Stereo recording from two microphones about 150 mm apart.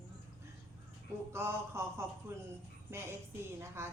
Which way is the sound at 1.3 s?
15° right (ahead or behind).